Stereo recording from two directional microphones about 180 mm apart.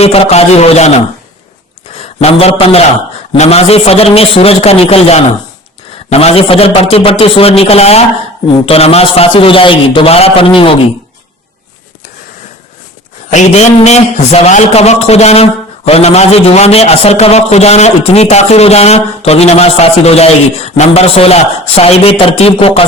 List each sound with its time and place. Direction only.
0.0 s a man's voice: 35° left (ahead or behind)
2.2 s a man's voice: 35° left (ahead or behind)
13.3 s a man's voice: 40° left (ahead or behind)